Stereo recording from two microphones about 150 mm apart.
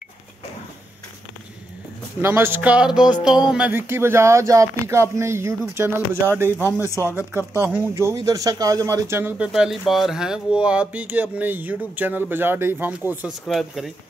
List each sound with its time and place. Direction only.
2.2 s speech: 15° right (ahead or behind)
6.6 s speech: 20° left (ahead or behind)
7.2 s speech: 10° right (ahead or behind)
9.5 s speech: centre (ahead or behind)
13.5 s speech: centre (ahead or behind)